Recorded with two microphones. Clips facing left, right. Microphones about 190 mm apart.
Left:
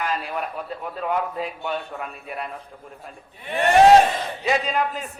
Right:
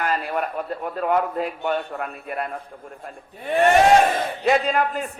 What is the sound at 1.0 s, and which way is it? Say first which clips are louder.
A man's voice: right 4 dB; 50° right (ahead or behind).